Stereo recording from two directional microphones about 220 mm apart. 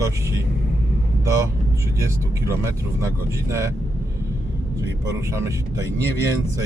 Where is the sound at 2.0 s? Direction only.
15° right (ahead or behind).